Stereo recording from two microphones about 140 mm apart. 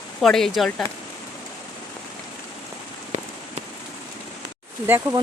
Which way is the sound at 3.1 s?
55° right (ahead or behind).